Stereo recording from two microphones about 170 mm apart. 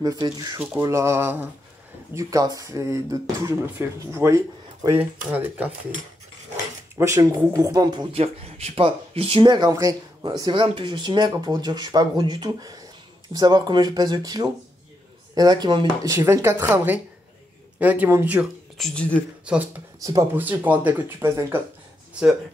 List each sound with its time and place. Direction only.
0.0 s speech: 25° right (ahead or behind)
18.8 s speech: 5° left (ahead or behind)
19.4 s speech: 5° right (ahead or behind)
20.0 s speech: 20° right (ahead or behind)